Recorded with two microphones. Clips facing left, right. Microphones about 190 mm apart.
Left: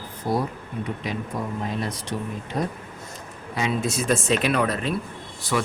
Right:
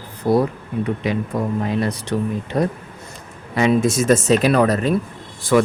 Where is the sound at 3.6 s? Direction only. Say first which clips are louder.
Right 9 dB; 65° right (ahead or behind).